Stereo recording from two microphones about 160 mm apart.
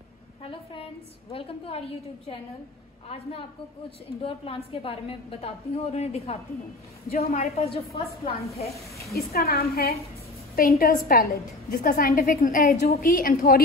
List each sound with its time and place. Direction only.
0.4 s a woman's voice: 35° left (ahead or behind)
4.7 s a woman's voice: 35° left (ahead or behind)
9.1 s a woman's voice: 70° left (ahead or behind)